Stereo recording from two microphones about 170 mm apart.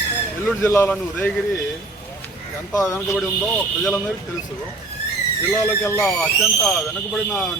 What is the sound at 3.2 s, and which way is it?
Speech, centre (ahead or behind).